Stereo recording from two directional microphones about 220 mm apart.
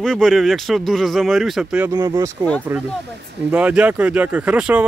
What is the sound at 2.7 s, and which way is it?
Speech, 10° right (ahead or behind).